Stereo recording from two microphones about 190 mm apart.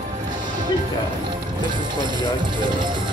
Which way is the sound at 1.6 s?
25° right (ahead or behind).